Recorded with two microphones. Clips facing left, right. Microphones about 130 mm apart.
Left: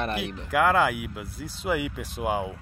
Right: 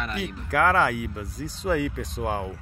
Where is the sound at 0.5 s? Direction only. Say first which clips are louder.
Even; 5° left (ahead or behind).